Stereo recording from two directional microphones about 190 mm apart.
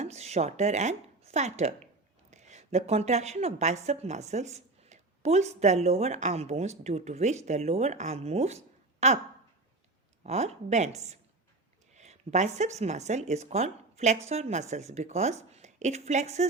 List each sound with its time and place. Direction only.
0.0 s a woman's voice: 35° right (ahead or behind)
10.2 s speech: 35° right (ahead or behind)